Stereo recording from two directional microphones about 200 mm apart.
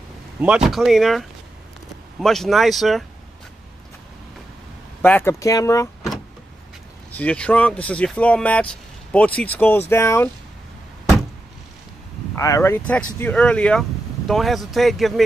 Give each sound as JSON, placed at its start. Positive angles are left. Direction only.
{"t": 0.4, "sound": "speech", "side_deg": -5}
{"t": 5.0, "sound": "speech", "side_deg": 10}
{"t": 7.1, "sound": "speech", "side_deg": 5}
{"t": 12.4, "sound": "speech", "side_deg": 15}